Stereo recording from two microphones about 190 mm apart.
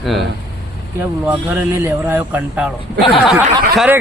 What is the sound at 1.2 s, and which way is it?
Speech, 15° right (ahead or behind).